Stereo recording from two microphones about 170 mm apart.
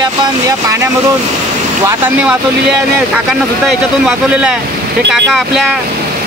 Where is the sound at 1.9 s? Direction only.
10° right (ahead or behind).